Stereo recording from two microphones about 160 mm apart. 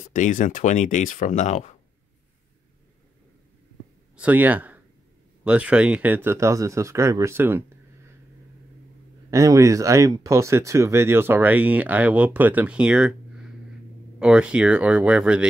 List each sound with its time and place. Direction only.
0.1 s speech: 55° left (ahead or behind)
4.2 s speech: 10° right (ahead or behind)
9.3 s speech: 20° right (ahead or behind)